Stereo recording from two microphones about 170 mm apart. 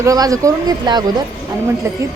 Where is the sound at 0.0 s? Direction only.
20° right (ahead or behind).